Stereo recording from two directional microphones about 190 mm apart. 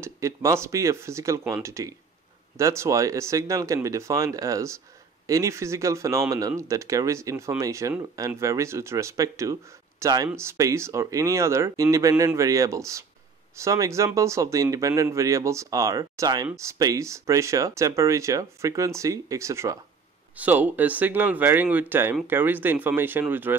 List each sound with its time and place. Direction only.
0.0 s speech: 15° right (ahead or behind)